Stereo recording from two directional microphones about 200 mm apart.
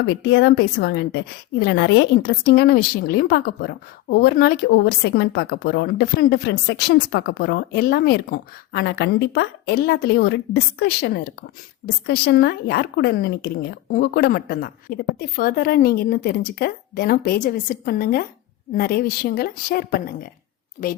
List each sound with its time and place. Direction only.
0.0 s a woman's voice: 60° left (ahead or behind)
20.8 s a woman's voice: 40° left (ahead or behind)